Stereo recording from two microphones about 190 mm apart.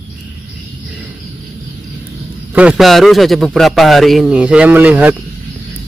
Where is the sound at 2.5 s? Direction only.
5° right (ahead or behind).